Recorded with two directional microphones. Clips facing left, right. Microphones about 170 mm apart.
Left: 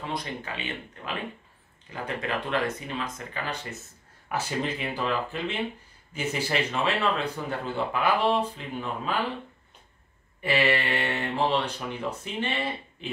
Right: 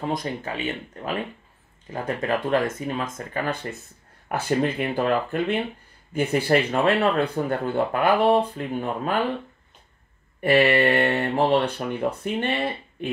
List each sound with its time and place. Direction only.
0.0 s speech: 45° right (ahead or behind)
1.9 s speech: 45° right (ahead or behind)
10.4 s speech: 55° right (ahead or behind)